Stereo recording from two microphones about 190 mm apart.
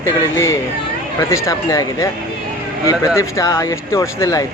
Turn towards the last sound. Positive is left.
turn(degrees=15)  # may be behind; listen again after turning